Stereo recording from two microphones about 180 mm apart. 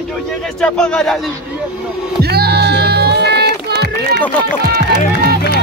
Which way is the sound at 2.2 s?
60° right (ahead or behind).